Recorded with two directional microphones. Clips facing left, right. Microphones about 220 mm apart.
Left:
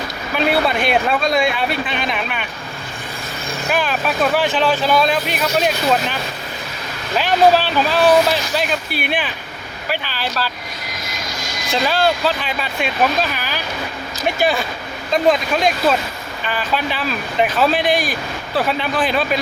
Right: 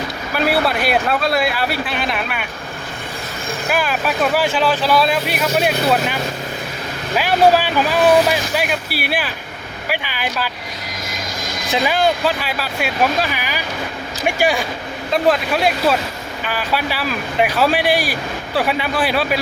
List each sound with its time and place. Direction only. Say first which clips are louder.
0.3 s speech: even; 5° right (ahead or behind)
3.7 s speech: even; 5° right (ahead or behind)
7.5 s speech: even; 10° right (ahead or behind)
11.1 s vehicle: right 2 dB; 50° right (ahead or behind)
11.7 s speech: right 1 dB; 15° right (ahead or behind)